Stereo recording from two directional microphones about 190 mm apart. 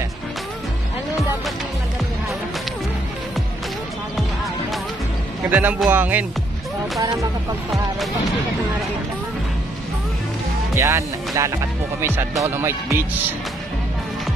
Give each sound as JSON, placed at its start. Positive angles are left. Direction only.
{"t": 5.5, "sound": "speech", "side_deg": -10}
{"t": 10.7, "sound": "speech", "side_deg": -15}